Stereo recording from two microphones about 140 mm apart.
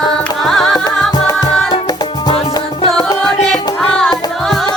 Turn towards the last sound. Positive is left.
turn(degrees=5)  # may be behind; listen again after turning